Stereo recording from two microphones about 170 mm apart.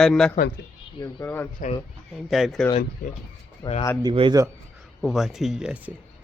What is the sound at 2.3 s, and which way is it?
Speech, centre (ahead or behind).